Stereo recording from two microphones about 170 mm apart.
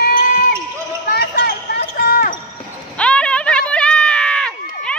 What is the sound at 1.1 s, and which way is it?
Basketball bounce, 70° left (ahead or behind).